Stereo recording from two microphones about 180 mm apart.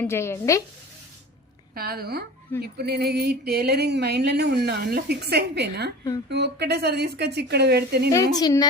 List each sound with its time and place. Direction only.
0.0 s a woman's voice: 15° left (ahead or behind)
1.7 s a sound: 55° right (ahead or behind)
8.1 s a woman's voice: 20° left (ahead or behind)